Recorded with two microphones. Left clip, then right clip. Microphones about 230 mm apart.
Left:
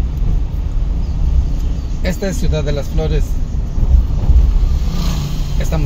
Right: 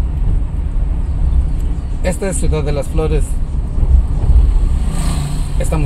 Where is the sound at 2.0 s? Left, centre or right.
Right.